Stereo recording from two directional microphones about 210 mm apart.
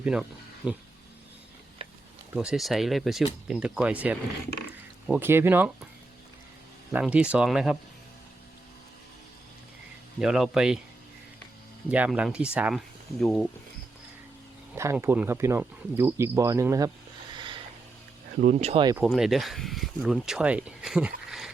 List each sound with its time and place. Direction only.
0.0 s speech: 5° right (ahead or behind)
1.8 s a sound: 25° right (ahead or behind)
2.3 s speech: 5° right (ahead or behind)
6.9 s speech: 5° right (ahead or behind)
10.2 s speech: centre (ahead or behind)
11.9 s speech: 5° right (ahead or behind)
14.8 s speech: 10° right (ahead or behind)
18.3 s speech: 35° right (ahead or behind)
18.9 s speech: centre (ahead or behind)